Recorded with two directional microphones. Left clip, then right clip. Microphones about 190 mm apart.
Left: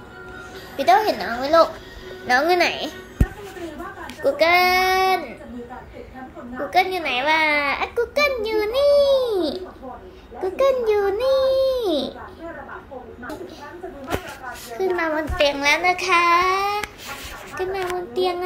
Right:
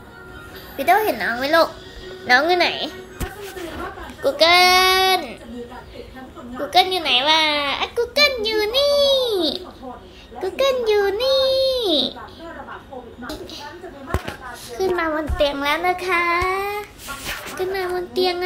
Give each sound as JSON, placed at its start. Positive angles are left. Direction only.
{"t": 0.7, "sound": "a woman's voice", "side_deg": -5}
{"t": 1.2, "sound": "speech", "side_deg": -35}
{"t": 2.2, "sound": "a child's voice", "side_deg": -5}
{"t": 4.2, "sound": "speech", "side_deg": 0}
{"t": 6.7, "sound": "a woman's voice", "side_deg": -5}
{"t": 7.6, "sound": "a child's voice", "side_deg": 10}
{"t": 14.8, "sound": "a child's voice", "side_deg": -5}